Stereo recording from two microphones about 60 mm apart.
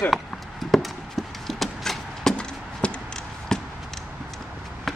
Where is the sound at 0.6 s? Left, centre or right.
Centre.